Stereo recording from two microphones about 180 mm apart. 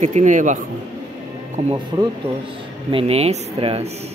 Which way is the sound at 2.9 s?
35° right (ahead or behind).